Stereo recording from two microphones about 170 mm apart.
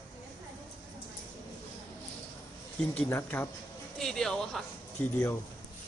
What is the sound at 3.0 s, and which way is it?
Speech, 10° left (ahead or behind).